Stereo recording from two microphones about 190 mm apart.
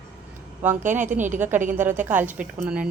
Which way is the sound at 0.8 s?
40° right (ahead or behind).